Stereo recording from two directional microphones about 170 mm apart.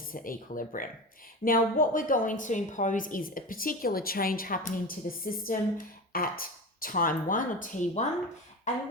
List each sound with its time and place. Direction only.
0.1 s a woman's voice: 55° left (ahead or behind)